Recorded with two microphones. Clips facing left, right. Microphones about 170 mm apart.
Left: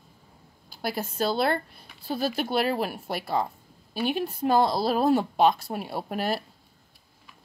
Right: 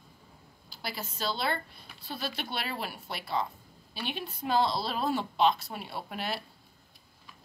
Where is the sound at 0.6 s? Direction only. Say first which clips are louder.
Left 8 dB; 50° left (ahead or behind).